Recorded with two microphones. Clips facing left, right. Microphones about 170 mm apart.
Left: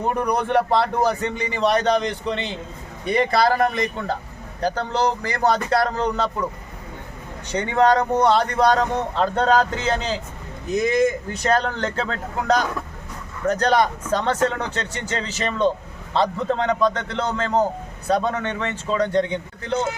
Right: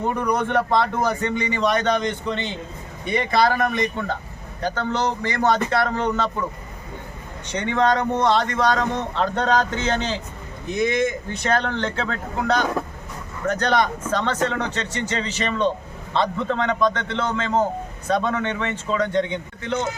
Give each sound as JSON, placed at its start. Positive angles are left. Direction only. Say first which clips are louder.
{"t": 0.3, "sound": "a man's voice", "louder": "left 2 dB", "side_deg": 35}
{"t": 7.5, "sound": "a man's voice", "louder": "left 2 dB", "side_deg": 35}